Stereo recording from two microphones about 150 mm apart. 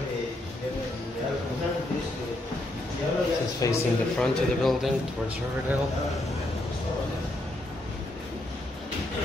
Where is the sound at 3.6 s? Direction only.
20° left (ahead or behind).